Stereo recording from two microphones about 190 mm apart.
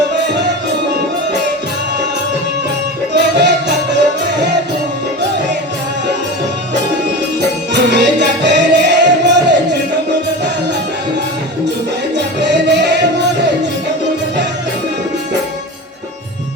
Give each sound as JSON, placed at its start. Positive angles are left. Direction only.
{"t": 0.1, "sound": "music", "side_deg": -65}
{"t": 3.1, "sound": "music", "side_deg": -65}
{"t": 7.7, "sound": "music", "side_deg": -65}
{"t": 12.1, "sound": "music", "side_deg": -65}